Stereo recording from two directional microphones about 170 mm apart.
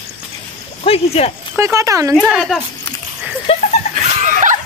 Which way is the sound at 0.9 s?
35° left (ahead or behind).